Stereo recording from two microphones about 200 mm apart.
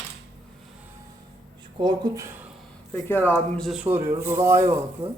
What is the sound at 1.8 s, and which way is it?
Speech, 20° right (ahead or behind).